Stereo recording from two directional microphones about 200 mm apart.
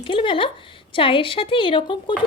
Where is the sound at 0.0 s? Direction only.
25° left (ahead or behind).